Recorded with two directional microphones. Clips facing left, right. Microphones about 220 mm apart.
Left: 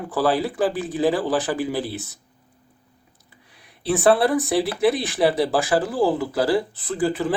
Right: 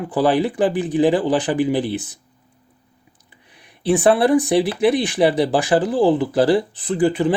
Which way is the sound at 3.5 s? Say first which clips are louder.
Right 5 dB; 15° right (ahead or behind).